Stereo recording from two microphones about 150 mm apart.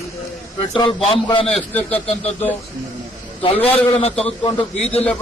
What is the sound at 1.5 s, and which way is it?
Speech, 5° left (ahead or behind).